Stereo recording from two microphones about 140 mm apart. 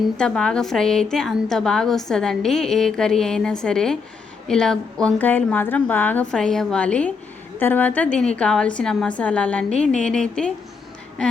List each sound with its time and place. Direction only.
0.2 s a woman's voice: 5° left (ahead or behind)